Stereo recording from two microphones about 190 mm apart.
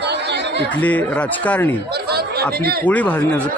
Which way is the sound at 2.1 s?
55° right (ahead or behind).